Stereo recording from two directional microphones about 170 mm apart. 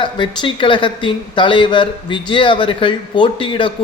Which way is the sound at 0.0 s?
30° left (ahead or behind).